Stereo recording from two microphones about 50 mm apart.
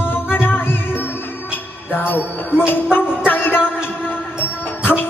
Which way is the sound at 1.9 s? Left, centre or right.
Left.